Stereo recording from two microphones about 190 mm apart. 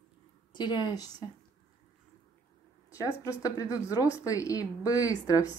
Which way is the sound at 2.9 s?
15° left (ahead or behind).